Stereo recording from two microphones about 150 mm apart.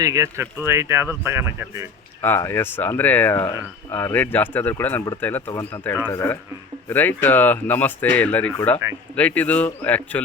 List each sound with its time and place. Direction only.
0.0 s speech: 20° right (ahead or behind)
2.2 s speech: 15° left (ahead or behind)